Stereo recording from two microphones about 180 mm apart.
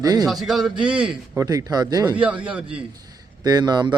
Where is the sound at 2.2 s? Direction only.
5° right (ahead or behind).